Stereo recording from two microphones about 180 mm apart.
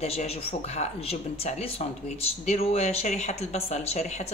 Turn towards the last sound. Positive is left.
turn(degrees=40)  # may be behind; listen again after turning